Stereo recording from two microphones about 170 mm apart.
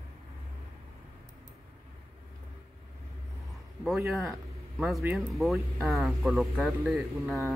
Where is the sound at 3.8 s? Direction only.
Centre (ahead or behind).